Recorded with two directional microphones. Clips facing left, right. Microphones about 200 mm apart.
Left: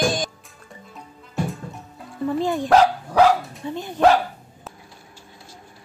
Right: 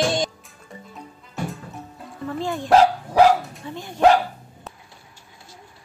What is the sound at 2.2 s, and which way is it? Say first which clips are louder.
Speech: left 5 dB; 15° left (ahead or behind).